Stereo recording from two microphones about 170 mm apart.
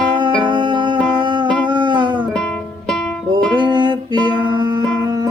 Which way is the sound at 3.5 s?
25° right (ahead or behind).